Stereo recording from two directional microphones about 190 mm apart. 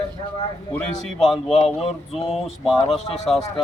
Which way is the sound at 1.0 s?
Centre (ahead or behind).